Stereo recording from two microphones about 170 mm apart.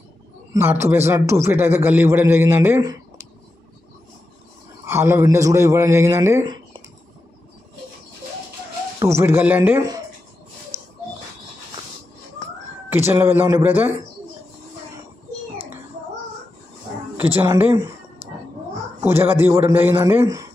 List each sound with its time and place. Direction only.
0.5 s a man's voice: 15° right (ahead or behind)
4.8 s a man's voice: 15° right (ahead or behind)
6.4 s a sound: 25° right (ahead or behind)
9.0 s a man's voice: 15° right (ahead or behind)
10.7 s a sound: 35° right (ahead or behind)
12.9 s a man's voice: 15° right (ahead or behind)
17.2 s a man's voice: 10° right (ahead or behind)
18.9 s a man's voice: 15° right (ahead or behind)